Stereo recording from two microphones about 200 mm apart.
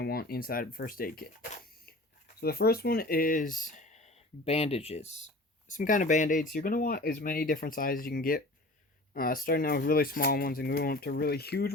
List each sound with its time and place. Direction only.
0.0 s speech: 50° left (ahead or behind)
2.4 s speech: 50° left (ahead or behind)